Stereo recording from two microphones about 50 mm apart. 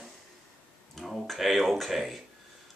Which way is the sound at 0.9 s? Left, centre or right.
Centre.